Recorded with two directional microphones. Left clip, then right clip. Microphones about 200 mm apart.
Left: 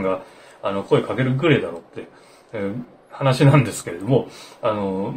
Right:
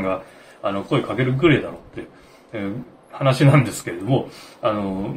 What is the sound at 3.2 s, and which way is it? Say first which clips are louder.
Speech: even; 20° left (ahead or behind).